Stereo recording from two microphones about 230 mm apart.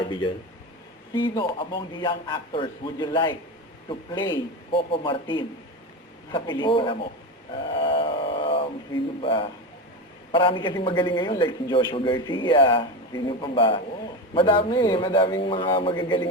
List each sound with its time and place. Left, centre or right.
1.1 s speech: centre
7.7 s a sound: left
9.2 s speech: left